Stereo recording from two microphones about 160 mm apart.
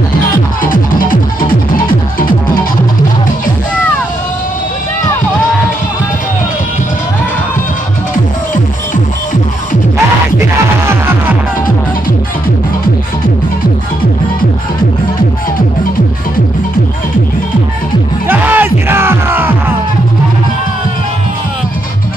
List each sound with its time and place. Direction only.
0.6 s music: 60° left (ahead or behind)
8.9 s music: 55° left (ahead or behind)
10.9 s music: 15° right (ahead or behind)
18.2 s music: 10° right (ahead or behind)